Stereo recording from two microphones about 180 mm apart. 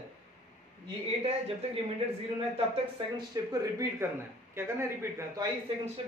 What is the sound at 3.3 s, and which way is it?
Speech, 20° right (ahead or behind).